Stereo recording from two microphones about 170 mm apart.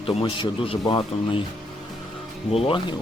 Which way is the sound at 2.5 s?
30° left (ahead or behind).